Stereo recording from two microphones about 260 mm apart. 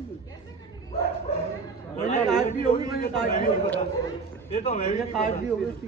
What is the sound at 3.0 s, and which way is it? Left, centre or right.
A man's voice, left.